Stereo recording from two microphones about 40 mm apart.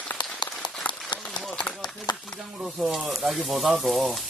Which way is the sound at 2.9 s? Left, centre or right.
Centre.